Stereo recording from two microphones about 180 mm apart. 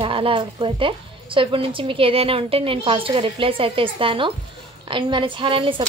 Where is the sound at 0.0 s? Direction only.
30° right (ahead or behind).